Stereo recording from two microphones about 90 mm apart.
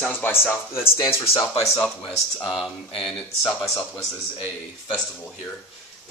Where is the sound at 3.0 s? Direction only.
Centre (ahead or behind).